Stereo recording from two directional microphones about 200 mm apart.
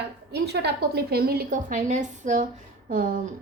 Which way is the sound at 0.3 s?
55° right (ahead or behind).